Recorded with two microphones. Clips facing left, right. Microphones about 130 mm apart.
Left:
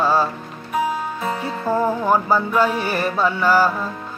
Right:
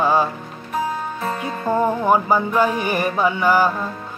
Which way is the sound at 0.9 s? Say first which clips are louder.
Left 1 dB; 10° left (ahead or behind).